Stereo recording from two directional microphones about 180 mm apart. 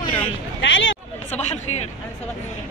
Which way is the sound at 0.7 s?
90° left.